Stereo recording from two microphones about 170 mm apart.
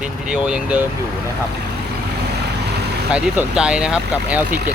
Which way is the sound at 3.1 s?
5° right (ahead or behind).